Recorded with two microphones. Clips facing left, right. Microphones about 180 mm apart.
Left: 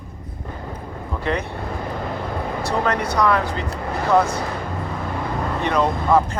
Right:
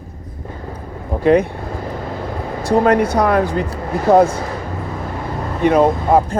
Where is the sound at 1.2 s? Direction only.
55° right (ahead or behind).